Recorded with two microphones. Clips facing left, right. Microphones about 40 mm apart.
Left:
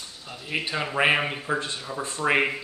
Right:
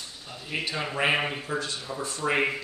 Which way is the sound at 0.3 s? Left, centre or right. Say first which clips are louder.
Left 3 dB; centre.